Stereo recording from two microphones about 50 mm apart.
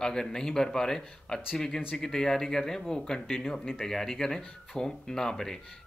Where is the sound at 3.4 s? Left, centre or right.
Centre.